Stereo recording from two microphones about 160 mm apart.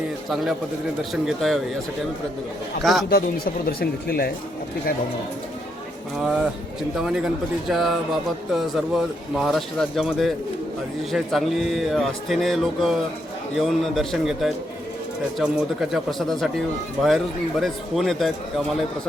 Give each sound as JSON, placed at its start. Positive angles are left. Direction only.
{"t": 1.1, "sound": "speech", "side_deg": 0}
{"t": 2.8, "sound": "speech", "side_deg": 0}
{"t": 3.1, "sound": "speech", "side_deg": 70}
{"t": 6.1, "sound": "speech", "side_deg": -5}